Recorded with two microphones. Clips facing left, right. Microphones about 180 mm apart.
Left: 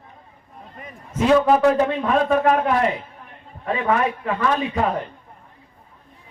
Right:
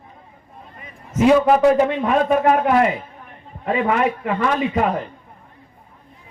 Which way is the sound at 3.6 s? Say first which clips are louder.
Right 2 dB; 20° right (ahead or behind).